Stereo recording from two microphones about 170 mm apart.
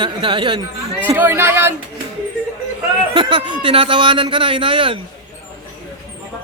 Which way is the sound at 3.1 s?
30° right (ahead or behind).